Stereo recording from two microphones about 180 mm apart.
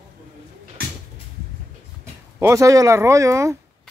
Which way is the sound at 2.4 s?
15° right (ahead or behind).